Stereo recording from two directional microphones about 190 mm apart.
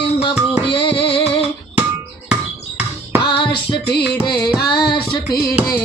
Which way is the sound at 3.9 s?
55° left (ahead or behind).